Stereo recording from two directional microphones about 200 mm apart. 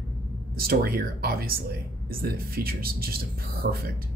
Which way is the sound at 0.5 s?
50° right (ahead or behind).